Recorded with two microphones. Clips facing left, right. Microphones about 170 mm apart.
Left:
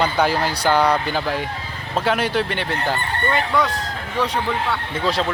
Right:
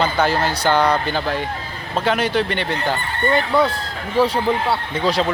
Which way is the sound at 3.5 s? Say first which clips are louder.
Right 3 dB; 30° right (ahead or behind).